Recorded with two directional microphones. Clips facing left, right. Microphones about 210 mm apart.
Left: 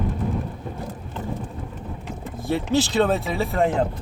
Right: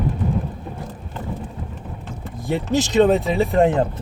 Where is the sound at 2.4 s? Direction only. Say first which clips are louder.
Right 1 dB; 15° right (ahead or behind).